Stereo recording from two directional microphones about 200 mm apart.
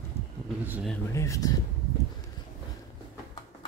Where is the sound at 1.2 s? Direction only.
15° left (ahead or behind).